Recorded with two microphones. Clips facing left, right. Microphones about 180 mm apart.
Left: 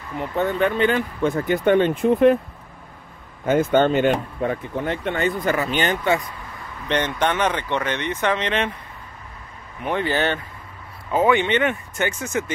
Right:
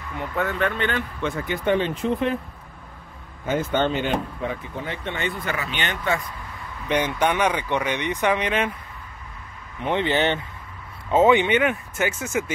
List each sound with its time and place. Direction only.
0.2 s speech: 25° left (ahead or behind)
0.7 s speech: 35° left (ahead or behind)
1.3 s speech: 55° left (ahead or behind)
3.4 s speech: 50° left (ahead or behind)
6.9 s speech: 10° right (ahead or behind)
9.8 s speech: 20° right (ahead or behind)
11.4 s speech: 5° right (ahead or behind)